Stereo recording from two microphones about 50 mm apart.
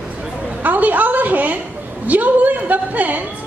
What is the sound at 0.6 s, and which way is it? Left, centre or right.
A woman's voice, right.